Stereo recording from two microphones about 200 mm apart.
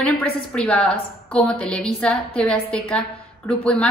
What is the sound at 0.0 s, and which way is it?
A woman's voice, 5° left (ahead or behind).